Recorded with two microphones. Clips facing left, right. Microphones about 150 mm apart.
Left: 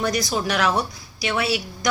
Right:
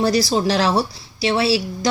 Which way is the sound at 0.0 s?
30° right (ahead or behind).